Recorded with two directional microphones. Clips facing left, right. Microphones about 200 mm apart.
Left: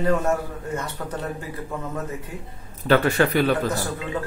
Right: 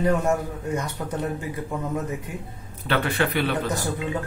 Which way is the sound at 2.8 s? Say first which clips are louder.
Left 5 dB; 45° left (ahead or behind).